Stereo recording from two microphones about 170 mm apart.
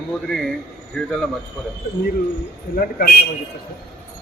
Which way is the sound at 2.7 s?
55° left (ahead or behind).